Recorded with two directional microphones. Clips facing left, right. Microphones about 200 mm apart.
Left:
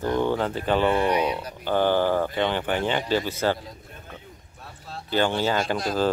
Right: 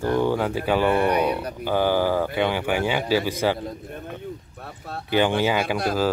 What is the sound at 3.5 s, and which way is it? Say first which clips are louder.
Speech: right 9 dB; 55° right (ahead or behind).